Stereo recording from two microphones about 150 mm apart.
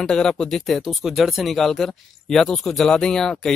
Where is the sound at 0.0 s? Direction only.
5° left (ahead or behind).